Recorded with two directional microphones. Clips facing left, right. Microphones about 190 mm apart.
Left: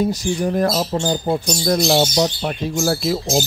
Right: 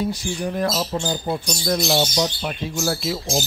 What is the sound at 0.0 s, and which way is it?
Speech, 40° left (ahead or behind).